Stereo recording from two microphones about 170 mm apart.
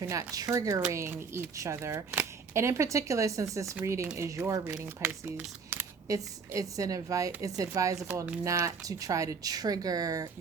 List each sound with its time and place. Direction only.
0.1 s speech: 20° right (ahead or behind)
7.9 s speech: 5° right (ahead or behind)
8.4 s speech: 20° right (ahead or behind)